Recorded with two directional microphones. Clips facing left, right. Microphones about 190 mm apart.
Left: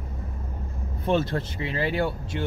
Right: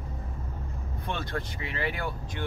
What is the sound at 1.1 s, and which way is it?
Speech, 25° left (ahead or behind).